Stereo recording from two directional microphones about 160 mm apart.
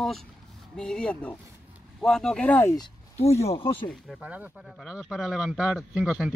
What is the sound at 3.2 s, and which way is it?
Speech, 40° left (ahead or behind).